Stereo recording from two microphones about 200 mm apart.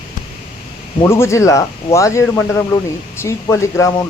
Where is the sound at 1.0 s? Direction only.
15° left (ahead or behind).